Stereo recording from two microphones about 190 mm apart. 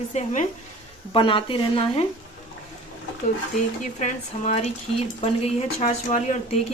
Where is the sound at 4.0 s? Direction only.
35° left (ahead or behind).